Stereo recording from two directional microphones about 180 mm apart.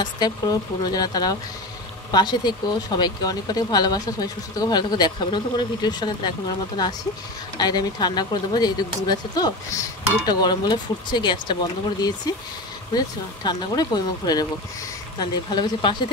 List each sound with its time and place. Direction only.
0.0 s speech: 25° left (ahead or behind)